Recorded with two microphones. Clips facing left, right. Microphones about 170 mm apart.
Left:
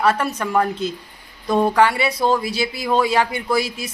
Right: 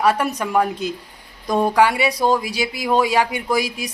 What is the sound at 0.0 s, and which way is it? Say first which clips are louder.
Speech: right 1 dB; 15° right (ahead or behind).